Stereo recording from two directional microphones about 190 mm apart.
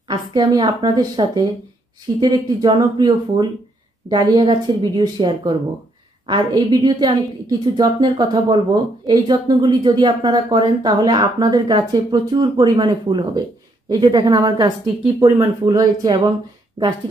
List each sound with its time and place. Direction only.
0.1 s speech: 20° right (ahead or behind)